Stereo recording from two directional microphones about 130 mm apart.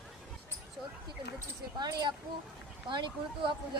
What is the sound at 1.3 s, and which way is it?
A woman's voice, 30° right (ahead or behind).